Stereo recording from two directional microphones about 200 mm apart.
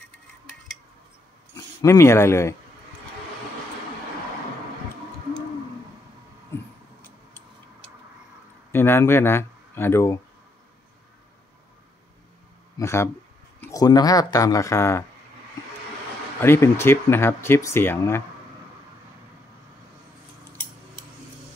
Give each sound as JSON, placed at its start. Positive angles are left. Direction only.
{"t": 1.5, "sound": "speech", "side_deg": 15}
{"t": 6.5, "sound": "a sound", "side_deg": 10}
{"t": 8.7, "sound": "speech", "side_deg": 10}
{"t": 12.7, "sound": "speech", "side_deg": 15}
{"t": 16.3, "sound": "speech", "side_deg": 10}